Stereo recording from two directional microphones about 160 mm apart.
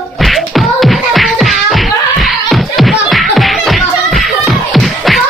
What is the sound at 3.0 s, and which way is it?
Music, centre (ahead or behind).